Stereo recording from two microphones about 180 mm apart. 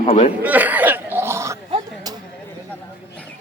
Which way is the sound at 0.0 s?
35° left (ahead or behind).